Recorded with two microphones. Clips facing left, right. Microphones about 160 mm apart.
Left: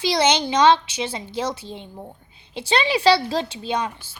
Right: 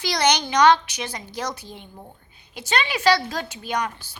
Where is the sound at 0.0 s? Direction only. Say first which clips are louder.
Left 2 dB; 25° left (ahead or behind).